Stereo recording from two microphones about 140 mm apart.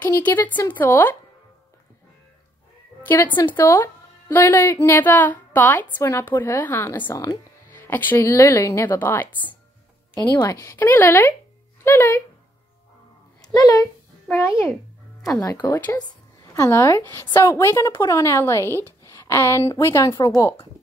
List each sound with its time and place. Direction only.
0.0 s a woman's voice: 15° left (ahead or behind)
3.1 s a woman's voice: 15° left (ahead or behind)
7.0 s a woman's voice: 30° left (ahead or behind)
7.7 s a woman's voice: 15° left (ahead or behind)
10.1 s a woman's voice: 30° left (ahead or behind); by 12.2 s 15° left (ahead or behind)
13.4 s speech: 25° left (ahead or behind)
15.4 s a woman's voice: 30° left (ahead or behind)